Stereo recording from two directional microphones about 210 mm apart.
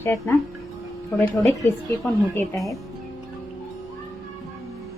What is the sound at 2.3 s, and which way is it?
Speech, 5° left (ahead or behind).